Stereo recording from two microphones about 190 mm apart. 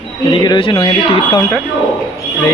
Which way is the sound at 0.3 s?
25° left (ahead or behind).